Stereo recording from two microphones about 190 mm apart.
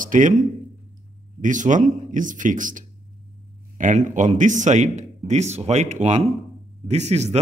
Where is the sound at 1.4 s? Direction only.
40° right (ahead or behind).